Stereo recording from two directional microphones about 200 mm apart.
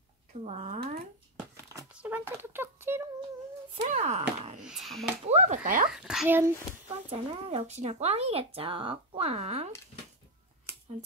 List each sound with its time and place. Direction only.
0.4 s speech: 35° right (ahead or behind)
1.7 s speech: 10° right (ahead or behind)
3.7 s speech: 35° right (ahead or behind)
4.6 s speech: centre (ahead or behind)
5.2 s speech: 35° right (ahead or behind)
5.9 s a child's voice: 5° right (ahead or behind)
7.1 s speech: 30° right (ahead or behind)